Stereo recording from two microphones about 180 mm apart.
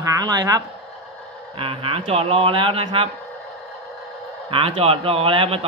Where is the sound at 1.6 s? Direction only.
30° right (ahead or behind).